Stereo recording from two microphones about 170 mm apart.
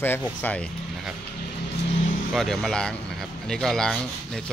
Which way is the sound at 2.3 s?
Centre (ahead or behind).